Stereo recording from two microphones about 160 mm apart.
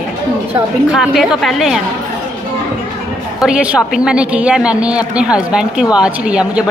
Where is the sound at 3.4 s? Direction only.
5° right (ahead or behind).